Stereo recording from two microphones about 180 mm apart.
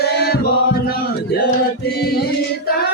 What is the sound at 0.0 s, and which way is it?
Music, 65° left (ahead or behind).